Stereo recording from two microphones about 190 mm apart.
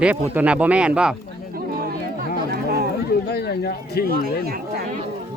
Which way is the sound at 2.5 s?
55° right (ahead or behind).